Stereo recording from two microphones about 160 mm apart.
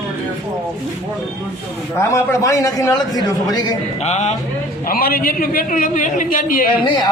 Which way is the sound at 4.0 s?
45° left (ahead or behind).